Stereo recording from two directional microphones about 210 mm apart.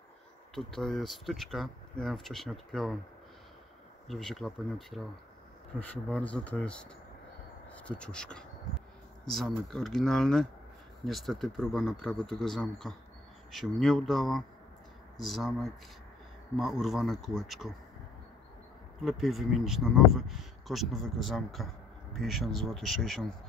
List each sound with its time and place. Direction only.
0.6 s speech: centre (ahead or behind)
4.1 s speech: centre (ahead or behind)
19.0 s speech: centre (ahead or behind)